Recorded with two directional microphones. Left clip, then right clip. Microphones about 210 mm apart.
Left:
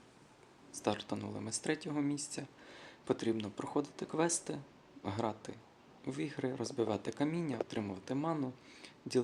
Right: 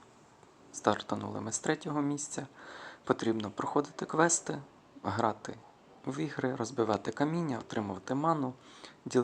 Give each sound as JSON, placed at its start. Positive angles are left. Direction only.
{"t": 0.7, "sound": "speech", "side_deg": -10}